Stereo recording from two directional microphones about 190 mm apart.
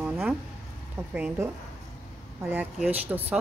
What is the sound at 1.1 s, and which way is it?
Speech, 5° right (ahead or behind).